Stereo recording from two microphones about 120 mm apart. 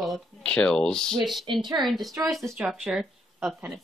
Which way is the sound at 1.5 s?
40° right (ahead or behind).